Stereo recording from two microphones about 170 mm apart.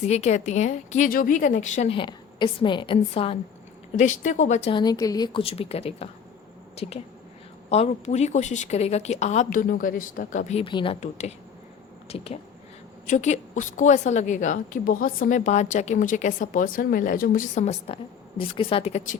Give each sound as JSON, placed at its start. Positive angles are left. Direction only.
{"t": 0.0, "sound": "a woman's voice", "side_deg": 40}
{"t": 1.9, "sound": "a woman's voice", "side_deg": 30}
{"t": 3.9, "sound": "a woman's voice", "side_deg": 45}
{"t": 4.7, "sound": "a woman's voice", "side_deg": 25}
{"t": 10.6, "sound": "a woman's voice", "side_deg": 30}
{"t": 11.0, "sound": "a woman's voice", "side_deg": 40}